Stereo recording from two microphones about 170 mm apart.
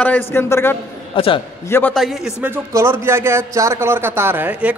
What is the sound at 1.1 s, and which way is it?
Speech, 30° left (ahead or behind).